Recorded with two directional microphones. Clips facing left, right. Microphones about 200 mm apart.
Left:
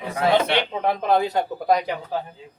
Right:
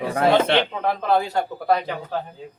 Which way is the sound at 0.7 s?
20° left (ahead or behind).